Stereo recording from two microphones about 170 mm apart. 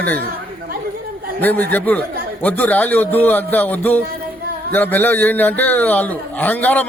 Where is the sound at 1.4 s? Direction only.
10° left (ahead or behind).